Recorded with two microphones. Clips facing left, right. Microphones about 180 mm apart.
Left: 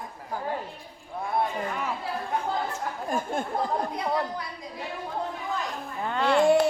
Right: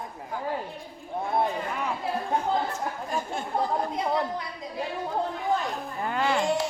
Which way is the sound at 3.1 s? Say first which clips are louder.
Left 5 dB; 50° left (ahead or behind).